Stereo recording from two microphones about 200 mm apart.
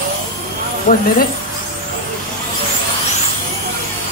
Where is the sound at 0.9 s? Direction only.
40° left (ahead or behind).